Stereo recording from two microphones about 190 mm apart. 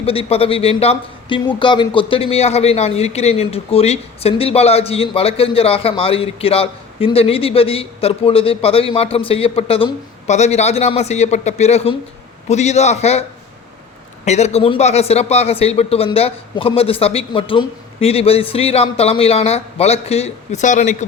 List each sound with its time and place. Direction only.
0.0 s a man's voice: 30° left (ahead or behind)
14.3 s a man's voice: 35° left (ahead or behind)